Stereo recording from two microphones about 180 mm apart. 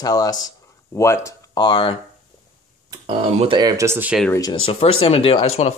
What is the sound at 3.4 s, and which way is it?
Speech, 25° right (ahead or behind).